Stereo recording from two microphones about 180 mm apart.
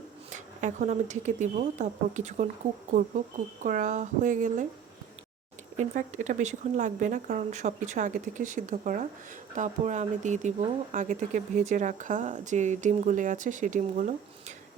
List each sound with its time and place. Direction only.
0.3 s speech: 40° right (ahead or behind)
5.7 s speech: 40° right (ahead or behind)